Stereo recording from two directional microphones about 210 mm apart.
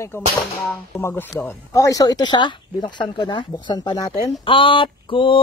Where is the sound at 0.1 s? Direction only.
10° left (ahead or behind).